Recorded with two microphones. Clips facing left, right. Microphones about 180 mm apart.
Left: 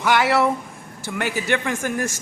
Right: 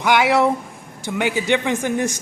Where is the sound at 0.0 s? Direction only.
15° right (ahead or behind).